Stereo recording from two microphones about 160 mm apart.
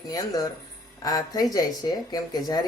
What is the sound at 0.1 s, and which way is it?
Speech, 25° left (ahead or behind).